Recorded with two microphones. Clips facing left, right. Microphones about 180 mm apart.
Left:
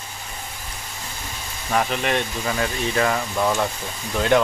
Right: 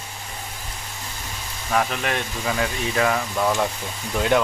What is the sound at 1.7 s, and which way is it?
Speech, centre (ahead or behind).